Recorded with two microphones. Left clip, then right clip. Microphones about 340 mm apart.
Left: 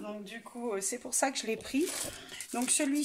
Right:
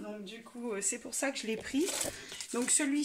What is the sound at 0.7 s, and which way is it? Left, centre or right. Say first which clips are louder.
Speech: left 1 dB; centre.